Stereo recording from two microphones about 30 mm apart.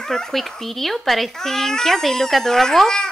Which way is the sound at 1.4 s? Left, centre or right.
Centre.